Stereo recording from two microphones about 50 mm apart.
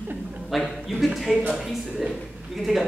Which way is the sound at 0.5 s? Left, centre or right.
Centre.